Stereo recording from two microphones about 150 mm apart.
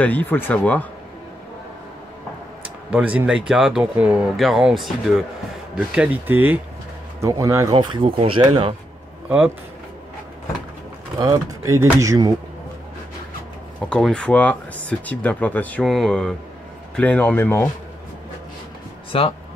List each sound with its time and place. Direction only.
0.0 s speech: 10° left (ahead or behind)
2.9 s speech: 10° right (ahead or behind)
7.7 s speech: 35° right (ahead or behind)
11.1 s speech: 25° right (ahead or behind)
13.7 s speech: 5° left (ahead or behind)
19.1 s speech: 35° left (ahead or behind)